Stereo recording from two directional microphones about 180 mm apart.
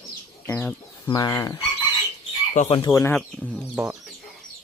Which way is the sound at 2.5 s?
40° left (ahead or behind).